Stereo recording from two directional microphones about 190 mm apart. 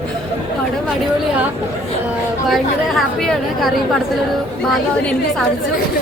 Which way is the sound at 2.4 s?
Centre (ahead or behind).